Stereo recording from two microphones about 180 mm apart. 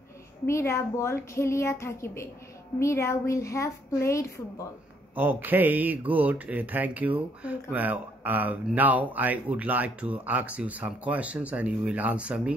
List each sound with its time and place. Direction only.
0.5 s speech: 15° left (ahead or behind)
5.1 s speech: 10° right (ahead or behind)